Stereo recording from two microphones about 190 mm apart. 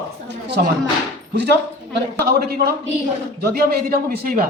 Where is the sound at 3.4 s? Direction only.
50° right (ahead or behind).